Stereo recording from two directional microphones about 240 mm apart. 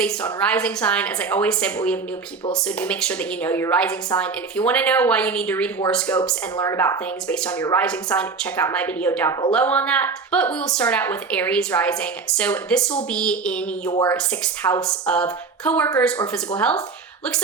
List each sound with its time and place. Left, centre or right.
0.3 s a woman's voice: centre
13.9 s speech: centre
14.6 s a woman's voice: centre